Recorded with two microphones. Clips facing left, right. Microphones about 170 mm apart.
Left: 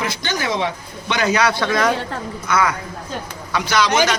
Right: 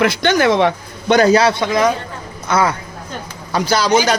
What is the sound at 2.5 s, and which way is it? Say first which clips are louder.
A man's voice: right 3 dB; 30° right (ahead or behind).